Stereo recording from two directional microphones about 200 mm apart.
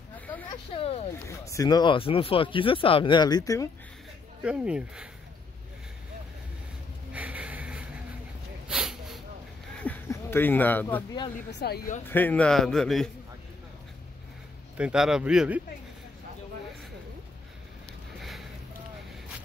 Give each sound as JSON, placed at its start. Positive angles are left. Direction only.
{"t": 0.5, "sound": "a sound", "side_deg": 30}
{"t": 1.2, "sound": "speech", "side_deg": 15}
{"t": 4.4, "sound": "a man's voice", "side_deg": -5}
{"t": 7.1, "sound": "a sound", "side_deg": -5}
{"t": 8.6, "sound": "snort", "side_deg": -5}
{"t": 9.8, "sound": "speech", "side_deg": 10}
{"t": 11.6, "sound": "speech", "side_deg": 55}
{"t": 12.1, "sound": "a man's voice", "side_deg": 10}
{"t": 14.8, "sound": "a man's voice", "side_deg": -5}
{"t": 18.2, "sound": "a sound", "side_deg": 0}